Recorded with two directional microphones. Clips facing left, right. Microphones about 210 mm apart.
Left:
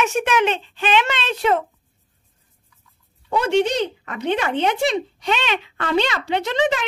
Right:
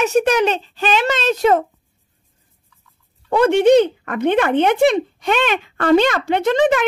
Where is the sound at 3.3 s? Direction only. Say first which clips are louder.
Right 7 dB; 55° right (ahead or behind).